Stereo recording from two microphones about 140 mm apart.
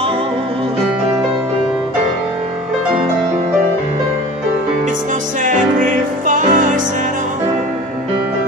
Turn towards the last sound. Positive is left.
turn(degrees=-70)  # may be behind; listen again after turning